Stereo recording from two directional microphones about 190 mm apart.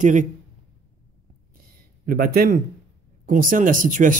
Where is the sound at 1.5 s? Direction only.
50° right (ahead or behind).